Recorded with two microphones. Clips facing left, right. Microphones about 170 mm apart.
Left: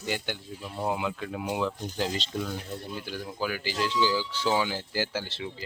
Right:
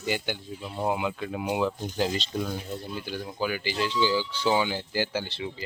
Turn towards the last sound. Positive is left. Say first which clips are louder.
# right 2 dB
turn(degrees=0)  # may be behind; listen again after turning